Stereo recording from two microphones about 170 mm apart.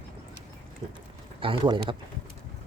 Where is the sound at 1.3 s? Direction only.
30° right (ahead or behind).